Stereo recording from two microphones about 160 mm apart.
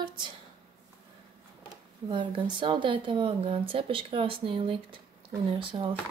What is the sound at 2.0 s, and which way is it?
Speech, 30° right (ahead or behind).